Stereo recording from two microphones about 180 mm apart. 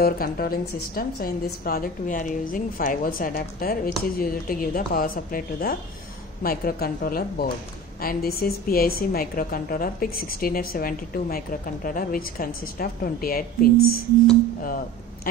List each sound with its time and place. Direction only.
0.0 s a woman's voice: 55° left (ahead or behind)